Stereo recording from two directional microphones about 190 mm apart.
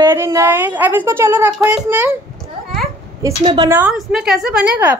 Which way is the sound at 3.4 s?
30° right (ahead or behind).